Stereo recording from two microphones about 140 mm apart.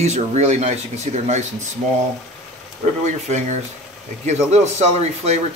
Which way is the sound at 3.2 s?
55° right (ahead or behind).